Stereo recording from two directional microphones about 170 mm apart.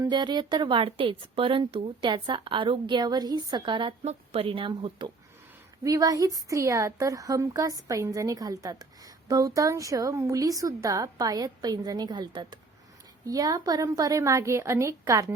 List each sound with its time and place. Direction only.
0.0 s a woman's voice: 25° right (ahead or behind)